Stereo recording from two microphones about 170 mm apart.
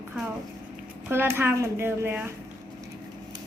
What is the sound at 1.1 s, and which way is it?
Speech, 15° right (ahead or behind).